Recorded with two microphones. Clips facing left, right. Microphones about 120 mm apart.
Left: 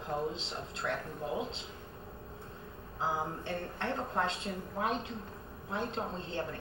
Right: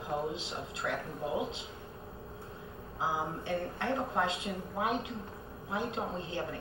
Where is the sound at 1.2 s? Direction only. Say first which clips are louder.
Right 2 dB; 10° right (ahead or behind).